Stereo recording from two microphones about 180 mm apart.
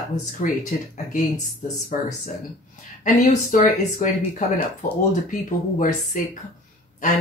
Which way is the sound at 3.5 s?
45° left (ahead or behind).